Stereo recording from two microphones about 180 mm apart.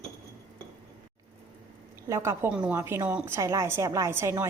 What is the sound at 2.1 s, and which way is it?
A woman's voice, 15° right (ahead or behind).